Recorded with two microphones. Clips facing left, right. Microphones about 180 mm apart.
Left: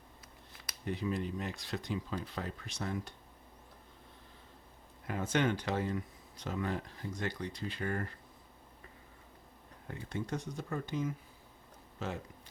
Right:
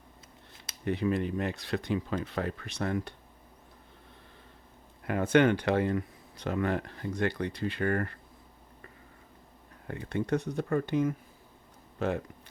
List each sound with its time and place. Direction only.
0.9 s speech: 65° right (ahead or behind)
5.0 s speech: 65° right (ahead or behind)
9.9 s speech: 65° right (ahead or behind)